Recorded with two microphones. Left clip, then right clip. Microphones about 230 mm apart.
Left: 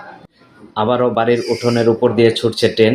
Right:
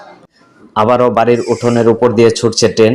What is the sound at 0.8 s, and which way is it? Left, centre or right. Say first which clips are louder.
Speech: right 5 dB; right.